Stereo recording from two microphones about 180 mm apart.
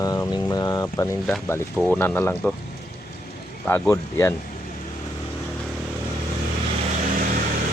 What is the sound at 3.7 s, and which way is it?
Speech, 15° left (ahead or behind).